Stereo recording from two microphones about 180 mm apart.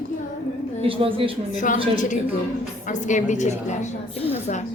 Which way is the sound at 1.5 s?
45° left (ahead or behind).